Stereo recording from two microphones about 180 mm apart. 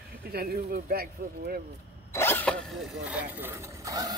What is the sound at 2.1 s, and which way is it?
Zipper, 10° left (ahead or behind).